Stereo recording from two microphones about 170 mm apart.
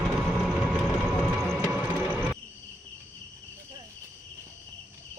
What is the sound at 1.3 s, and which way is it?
Music, centre (ahead or behind).